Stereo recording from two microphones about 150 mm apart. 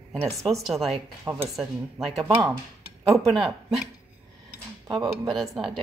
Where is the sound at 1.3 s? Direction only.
30° right (ahead or behind).